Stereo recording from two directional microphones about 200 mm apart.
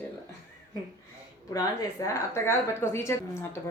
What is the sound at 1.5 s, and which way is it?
A woman's voice, 15° left (ahead or behind).